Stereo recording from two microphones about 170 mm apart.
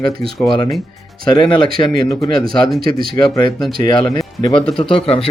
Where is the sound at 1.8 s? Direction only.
25° left (ahead or behind).